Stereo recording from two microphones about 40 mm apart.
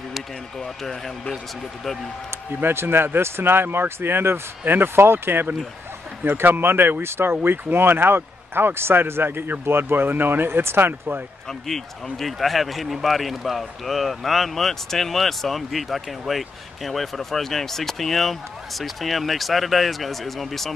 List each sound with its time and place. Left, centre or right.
0.6 s speech: centre
2.6 s speech: right
6.2 s speech: right
9.5 s speech: right
11.6 s speech: centre